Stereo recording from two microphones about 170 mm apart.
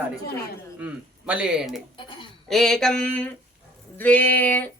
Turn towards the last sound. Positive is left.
turn(degrees=10)  # may be behind; listen again after turning